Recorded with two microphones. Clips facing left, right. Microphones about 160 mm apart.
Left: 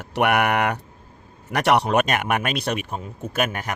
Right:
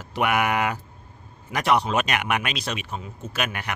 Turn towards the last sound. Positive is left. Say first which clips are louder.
# left 5 dB
turn(degrees=45)  # may be behind; listen again after turning